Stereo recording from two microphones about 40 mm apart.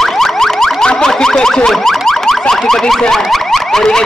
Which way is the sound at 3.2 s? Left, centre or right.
Centre.